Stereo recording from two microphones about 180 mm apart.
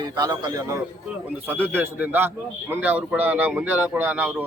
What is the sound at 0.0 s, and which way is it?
Speech, 20° right (ahead or behind).